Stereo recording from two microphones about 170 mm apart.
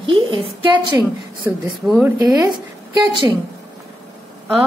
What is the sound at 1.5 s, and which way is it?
A woman's voice, 15° right (ahead or behind).